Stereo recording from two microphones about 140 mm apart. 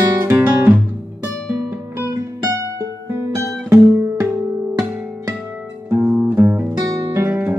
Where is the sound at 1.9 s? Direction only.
20° right (ahead or behind).